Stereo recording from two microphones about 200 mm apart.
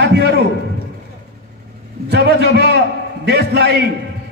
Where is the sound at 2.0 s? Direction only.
55° right (ahead or behind).